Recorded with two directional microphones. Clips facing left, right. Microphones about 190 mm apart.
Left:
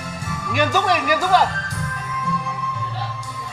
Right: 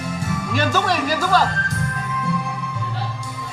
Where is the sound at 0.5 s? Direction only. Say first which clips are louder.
Left 2 dB; 15° left (ahead or behind).